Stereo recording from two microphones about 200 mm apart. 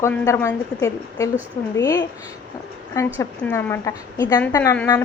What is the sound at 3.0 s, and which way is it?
Speech, 15° left (ahead or behind).